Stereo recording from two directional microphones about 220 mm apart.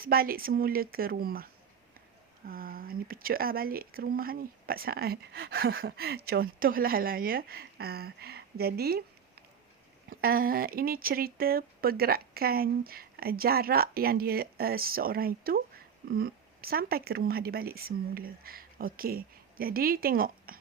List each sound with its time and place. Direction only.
0.0 s speech: 40° right (ahead or behind)
2.5 s speech: 40° right (ahead or behind)
10.1 s speech: 40° right (ahead or behind)